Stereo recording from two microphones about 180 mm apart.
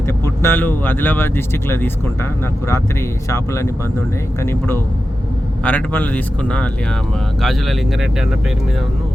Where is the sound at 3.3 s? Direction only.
15° left (ahead or behind); by 8.0 s centre (ahead or behind).